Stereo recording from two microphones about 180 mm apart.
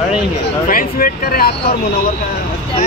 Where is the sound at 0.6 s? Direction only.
50° left (ahead or behind).